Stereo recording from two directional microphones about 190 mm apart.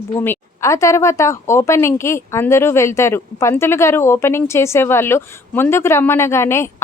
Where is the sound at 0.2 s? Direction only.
15° left (ahead or behind).